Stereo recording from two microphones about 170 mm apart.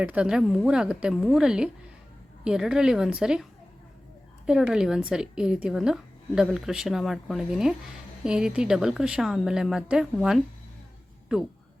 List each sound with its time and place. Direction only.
0.0 s a woman's voice: 5° right (ahead or behind)
4.4 s a woman's voice: 5° right (ahead or behind)